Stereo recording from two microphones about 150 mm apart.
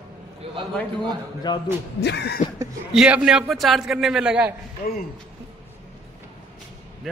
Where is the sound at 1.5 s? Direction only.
30° left (ahead or behind).